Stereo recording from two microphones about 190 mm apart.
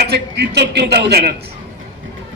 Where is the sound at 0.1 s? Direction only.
65° right (ahead or behind).